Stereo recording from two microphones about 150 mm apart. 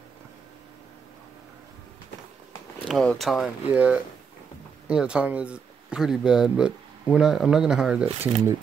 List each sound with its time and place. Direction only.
2.9 s speech: 5° left (ahead or behind)